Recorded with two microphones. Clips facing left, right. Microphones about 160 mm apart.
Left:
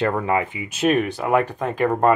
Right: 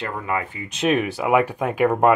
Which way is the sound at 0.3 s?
20° left (ahead or behind).